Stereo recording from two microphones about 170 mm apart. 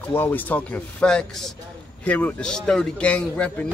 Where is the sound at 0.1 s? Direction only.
10° left (ahead or behind).